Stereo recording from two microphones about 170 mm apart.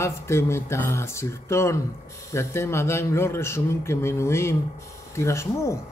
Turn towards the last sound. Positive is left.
turn(degrees=15)  # may be behind; listen again after turning